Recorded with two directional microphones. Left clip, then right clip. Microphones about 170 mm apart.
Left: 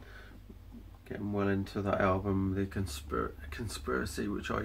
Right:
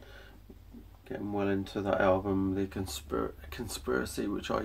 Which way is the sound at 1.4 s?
15° right (ahead or behind).